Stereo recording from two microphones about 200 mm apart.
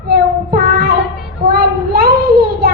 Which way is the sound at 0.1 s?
50° right (ahead or behind).